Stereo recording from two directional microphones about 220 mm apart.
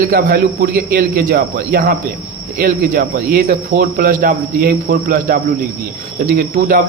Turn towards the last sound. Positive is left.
turn(degrees=-40)  # may be behind; listen again after turning